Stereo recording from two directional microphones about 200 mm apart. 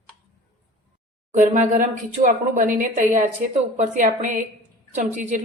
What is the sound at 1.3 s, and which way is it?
Speech, 40° right (ahead or behind).